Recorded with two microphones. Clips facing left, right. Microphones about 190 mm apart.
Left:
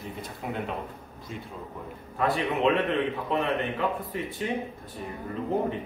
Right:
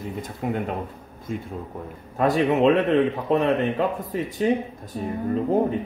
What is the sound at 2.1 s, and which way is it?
A man's voice, 45° right (ahead or behind).